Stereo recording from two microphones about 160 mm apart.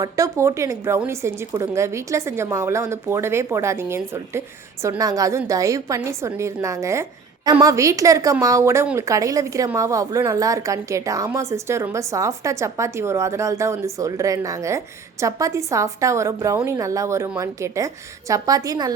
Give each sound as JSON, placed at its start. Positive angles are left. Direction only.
{"t": 0.0, "sound": "a woman's voice", "side_deg": -20}